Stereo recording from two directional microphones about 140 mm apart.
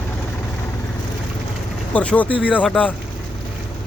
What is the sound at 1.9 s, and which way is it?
Speech, 10° left (ahead or behind).